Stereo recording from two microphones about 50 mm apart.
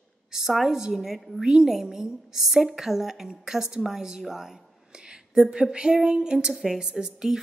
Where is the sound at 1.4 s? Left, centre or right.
Centre.